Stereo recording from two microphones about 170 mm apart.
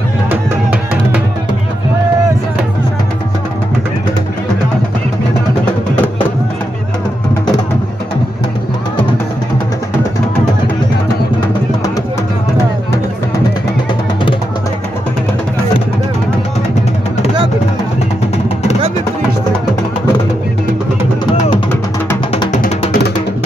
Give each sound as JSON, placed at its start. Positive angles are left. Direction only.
{"t": 22.5, "sound": "music", "side_deg": 55}